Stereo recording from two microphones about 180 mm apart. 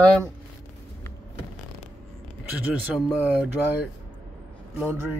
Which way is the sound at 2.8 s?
5° right (ahead or behind).